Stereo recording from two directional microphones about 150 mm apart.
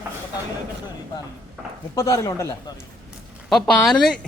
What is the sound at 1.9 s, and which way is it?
Speech, 25° left (ahead or behind).